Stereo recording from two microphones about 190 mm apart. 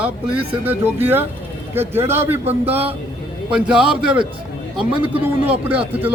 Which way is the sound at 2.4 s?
30° right (ahead or behind).